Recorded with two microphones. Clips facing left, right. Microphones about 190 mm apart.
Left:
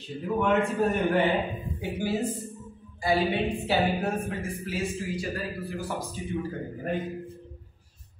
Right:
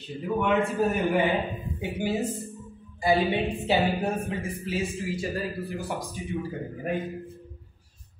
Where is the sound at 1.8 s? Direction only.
20° right (ahead or behind).